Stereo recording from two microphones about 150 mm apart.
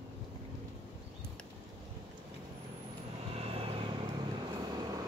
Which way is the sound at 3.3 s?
40° right (ahead or behind).